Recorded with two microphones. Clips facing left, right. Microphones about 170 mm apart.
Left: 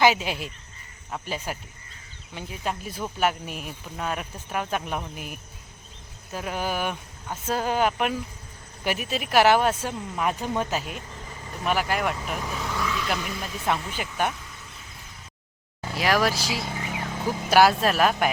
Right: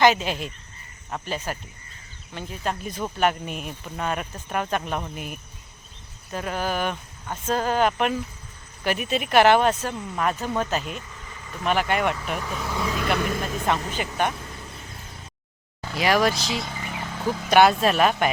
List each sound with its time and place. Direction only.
0.0 s speech: 10° left (ahead or behind)
12.9 s speech: 55° right (ahead or behind)
14.0 s speech: centre (ahead or behind)
16.0 s speech: centre (ahead or behind)